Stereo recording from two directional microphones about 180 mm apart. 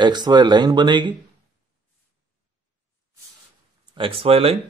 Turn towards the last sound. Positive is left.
turn(degrees=-35)  # may be behind; listen again after turning